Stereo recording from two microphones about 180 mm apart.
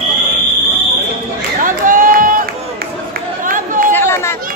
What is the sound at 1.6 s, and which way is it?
Crowd, 50° right (ahead or behind).